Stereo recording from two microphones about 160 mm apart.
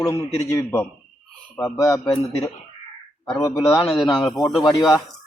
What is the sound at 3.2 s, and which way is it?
Speech, 20° left (ahead or behind).